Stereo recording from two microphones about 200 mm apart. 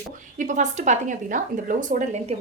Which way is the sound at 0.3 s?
40° right (ahead or behind).